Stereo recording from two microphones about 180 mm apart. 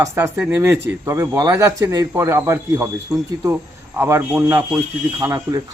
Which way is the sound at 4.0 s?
15° right (ahead or behind).